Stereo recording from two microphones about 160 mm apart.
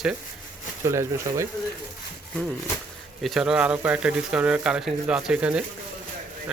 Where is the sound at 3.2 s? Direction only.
Centre (ahead or behind).